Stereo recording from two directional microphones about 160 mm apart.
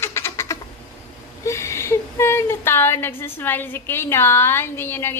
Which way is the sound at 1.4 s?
15° left (ahead or behind).